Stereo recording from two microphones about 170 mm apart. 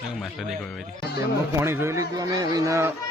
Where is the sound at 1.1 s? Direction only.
15° right (ahead or behind).